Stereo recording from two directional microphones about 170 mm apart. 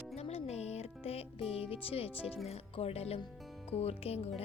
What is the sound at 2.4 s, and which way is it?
Speech, 35° left (ahead or behind).